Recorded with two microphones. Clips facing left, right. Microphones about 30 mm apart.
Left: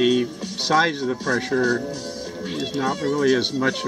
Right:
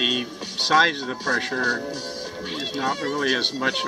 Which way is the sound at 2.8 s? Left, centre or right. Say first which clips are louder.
Left 3 dB; centre.